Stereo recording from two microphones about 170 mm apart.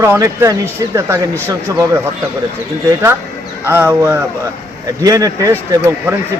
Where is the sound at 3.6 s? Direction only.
10° right (ahead or behind).